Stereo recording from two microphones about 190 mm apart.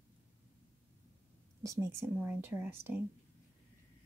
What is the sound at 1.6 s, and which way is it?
Speech, 15° right (ahead or behind).